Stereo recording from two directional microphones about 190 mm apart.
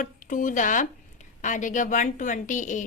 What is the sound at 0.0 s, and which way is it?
A woman's voice, 45° left (ahead or behind).